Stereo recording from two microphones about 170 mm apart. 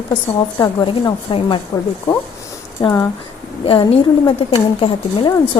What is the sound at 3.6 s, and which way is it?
Speech, 35° left (ahead or behind).